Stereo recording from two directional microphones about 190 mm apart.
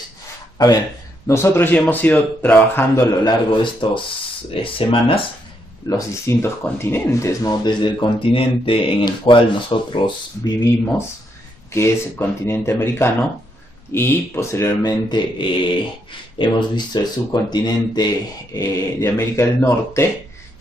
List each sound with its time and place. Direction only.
1.2 s speech: 15° left (ahead or behind)
3.3 s speech: 25° left (ahead or behind)
5.9 s speech: 15° left (ahead or behind)
11.7 s speech: 15° left (ahead or behind)